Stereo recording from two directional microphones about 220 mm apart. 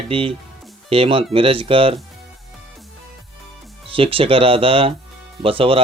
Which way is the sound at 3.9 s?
25° right (ahead or behind).